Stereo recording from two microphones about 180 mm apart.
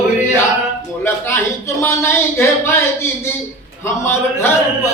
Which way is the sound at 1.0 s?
15° left (ahead or behind).